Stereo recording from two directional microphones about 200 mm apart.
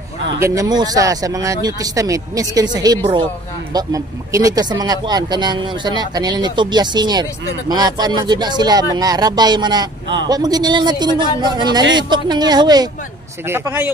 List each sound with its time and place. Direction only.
0.4 s speech: 20° right (ahead or behind)